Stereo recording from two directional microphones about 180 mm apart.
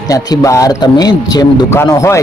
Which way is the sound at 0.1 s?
20° left (ahead or behind).